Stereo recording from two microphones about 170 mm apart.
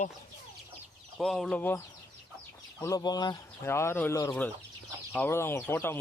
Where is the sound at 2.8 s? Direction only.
20° left (ahead or behind).